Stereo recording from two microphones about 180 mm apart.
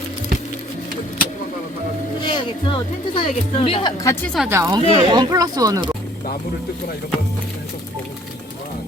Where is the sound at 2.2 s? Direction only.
25° left (ahead or behind).